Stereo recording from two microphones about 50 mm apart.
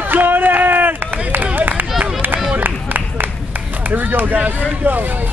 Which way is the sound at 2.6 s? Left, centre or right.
Right.